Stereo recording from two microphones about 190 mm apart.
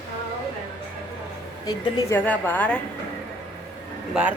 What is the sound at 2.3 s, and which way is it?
Speech, 10° left (ahead or behind).